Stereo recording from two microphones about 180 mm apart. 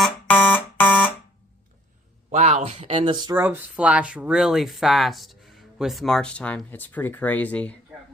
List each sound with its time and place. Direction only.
0.0 s alarm: 10° left (ahead or behind)
2.3 s speech: 40° right (ahead or behind)
3.3 s speech: 10° right (ahead or behind); by 7.8 s 10° left (ahead or behind)